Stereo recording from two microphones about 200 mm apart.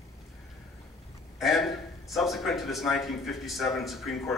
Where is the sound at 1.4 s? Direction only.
Centre (ahead or behind).